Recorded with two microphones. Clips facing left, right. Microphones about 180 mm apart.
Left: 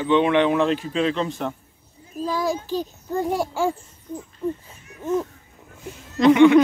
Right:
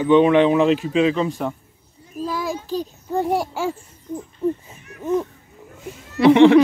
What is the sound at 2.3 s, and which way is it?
A child's voice, centre (ahead or behind).